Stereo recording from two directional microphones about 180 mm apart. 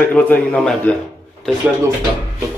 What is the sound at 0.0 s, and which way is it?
Speech, 10° left (ahead or behind).